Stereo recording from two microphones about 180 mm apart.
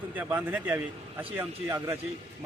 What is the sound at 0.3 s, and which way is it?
A man's voice, 10° right (ahead or behind).